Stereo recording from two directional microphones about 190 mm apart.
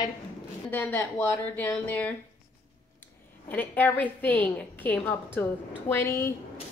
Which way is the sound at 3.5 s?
10° left (ahead or behind).